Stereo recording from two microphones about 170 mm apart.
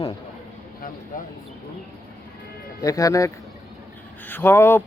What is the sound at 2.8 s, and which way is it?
Speech, 20° left (ahead or behind).